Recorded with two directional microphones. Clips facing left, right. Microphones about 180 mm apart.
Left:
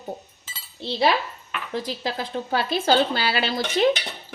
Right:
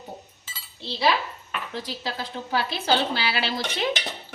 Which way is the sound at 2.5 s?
55° left (ahead or behind).